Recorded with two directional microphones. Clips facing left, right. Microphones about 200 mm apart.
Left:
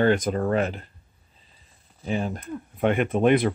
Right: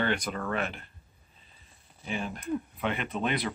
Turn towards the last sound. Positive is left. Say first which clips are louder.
# left 11 dB
turn(degrees=50)  # may be behind; listen again after turning